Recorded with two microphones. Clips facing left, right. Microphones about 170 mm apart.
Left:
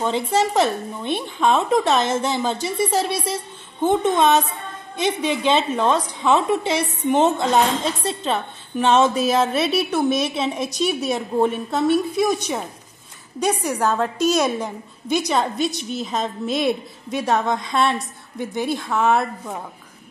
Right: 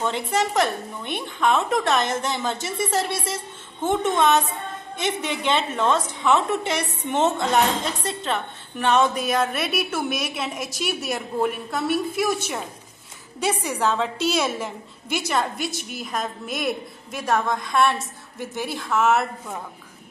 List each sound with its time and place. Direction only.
0.0 s a woman's voice: 20° left (ahead or behind)